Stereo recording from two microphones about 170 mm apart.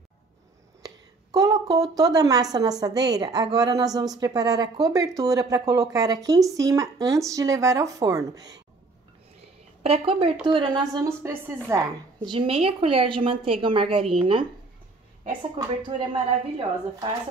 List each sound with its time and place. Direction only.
0.8 s a sound: 20° right (ahead or behind)
2.8 s speech: 25° right (ahead or behind)
9.8 s a woman's voice: 35° right (ahead or behind)
11.1 s a woman's voice: 15° right (ahead or behind)
12.3 s a woman's voice: 35° right (ahead or behind)